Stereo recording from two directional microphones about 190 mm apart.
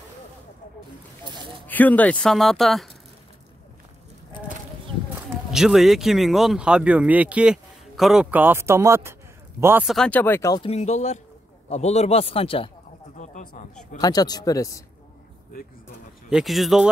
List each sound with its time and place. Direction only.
1.2 s a sound: 25° right (ahead or behind)
1.7 s speech: 10° left (ahead or behind)
5.5 s speech: centre (ahead or behind)
9.8 s speech: 5° left (ahead or behind)
10.6 s speech: 35° left (ahead or behind)
13.2 s speech: 40° left (ahead or behind)
13.9 s speech: 20° left (ahead or behind)
16.3 s speech: centre (ahead or behind)